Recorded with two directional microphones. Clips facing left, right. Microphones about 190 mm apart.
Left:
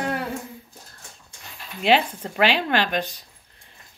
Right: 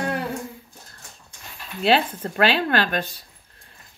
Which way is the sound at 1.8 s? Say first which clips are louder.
Even; 15° left (ahead or behind).